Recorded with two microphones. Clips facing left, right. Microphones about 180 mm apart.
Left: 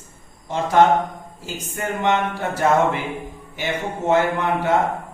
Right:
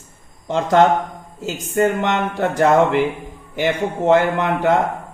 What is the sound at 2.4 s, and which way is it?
Speech, 50° right (ahead or behind).